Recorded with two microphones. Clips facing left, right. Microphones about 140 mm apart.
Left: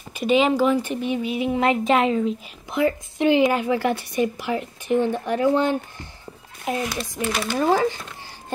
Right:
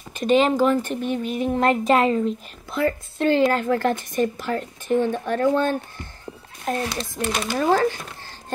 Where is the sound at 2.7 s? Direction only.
15° left (ahead or behind).